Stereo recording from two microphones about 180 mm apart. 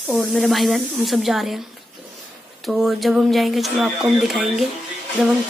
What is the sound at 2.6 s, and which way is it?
Speech, centre (ahead or behind).